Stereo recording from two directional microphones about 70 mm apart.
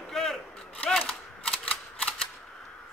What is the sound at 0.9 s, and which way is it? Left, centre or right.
Typewriter, centre.